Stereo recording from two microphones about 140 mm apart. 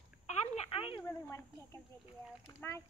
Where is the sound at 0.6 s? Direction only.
40° left (ahead or behind).